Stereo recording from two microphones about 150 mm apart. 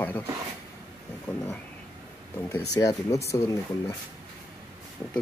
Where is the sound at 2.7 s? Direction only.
25° left (ahead or behind).